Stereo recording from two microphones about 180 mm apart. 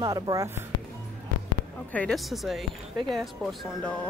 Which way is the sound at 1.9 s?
5° left (ahead or behind).